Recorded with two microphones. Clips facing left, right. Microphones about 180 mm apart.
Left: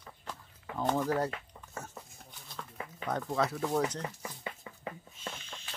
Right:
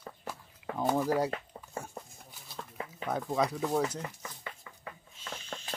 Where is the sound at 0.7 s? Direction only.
10° right (ahead or behind).